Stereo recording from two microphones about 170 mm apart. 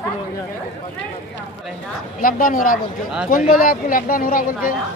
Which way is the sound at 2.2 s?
55° left (ahead or behind).